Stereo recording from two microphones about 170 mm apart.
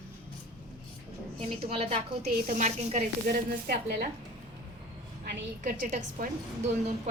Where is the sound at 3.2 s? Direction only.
65° right (ahead or behind).